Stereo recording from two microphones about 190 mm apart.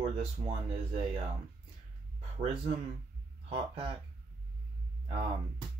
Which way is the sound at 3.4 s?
30° right (ahead or behind).